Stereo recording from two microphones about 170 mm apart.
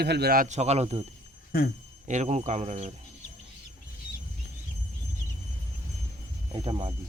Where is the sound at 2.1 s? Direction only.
40° right (ahead or behind).